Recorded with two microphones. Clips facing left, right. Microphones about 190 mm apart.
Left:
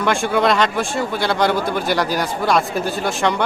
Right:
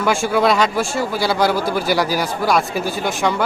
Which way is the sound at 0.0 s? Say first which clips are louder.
Right 1 dB; 5° right (ahead or behind).